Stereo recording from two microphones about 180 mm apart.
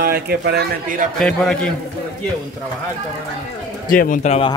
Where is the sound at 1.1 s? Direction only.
5° left (ahead or behind).